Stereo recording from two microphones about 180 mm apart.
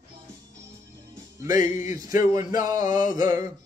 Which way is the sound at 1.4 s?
45° left (ahead or behind).